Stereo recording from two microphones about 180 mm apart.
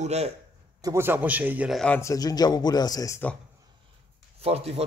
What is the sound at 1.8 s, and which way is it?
Speech, 10° left (ahead or behind).